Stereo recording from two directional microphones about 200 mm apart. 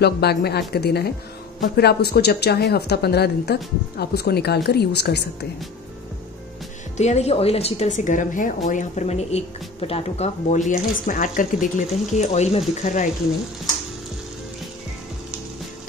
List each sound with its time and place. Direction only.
0.0 s a woman's voice: 55° left (ahead or behind)
7.0 s speech: 35° left (ahead or behind)